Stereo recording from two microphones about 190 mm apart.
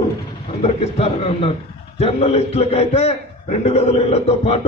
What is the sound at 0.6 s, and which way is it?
A man's voice, 35° left (ahead or behind).